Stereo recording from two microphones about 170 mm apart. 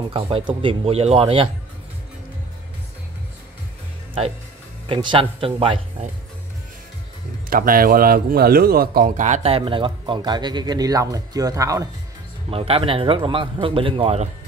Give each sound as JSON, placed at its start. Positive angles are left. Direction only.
{"t": 0.1, "sound": "a man's voice", "side_deg": -35}
{"t": 4.8, "sound": "a man's voice", "side_deg": -30}
{"t": 7.4, "sound": "a man's voice", "side_deg": -55}
{"t": 12.4, "sound": "a man's voice", "side_deg": -35}